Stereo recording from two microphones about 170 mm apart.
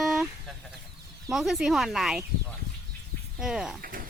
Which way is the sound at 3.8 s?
55° right (ahead or behind).